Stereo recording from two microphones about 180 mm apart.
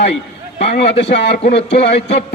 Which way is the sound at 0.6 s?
40° left (ahead or behind).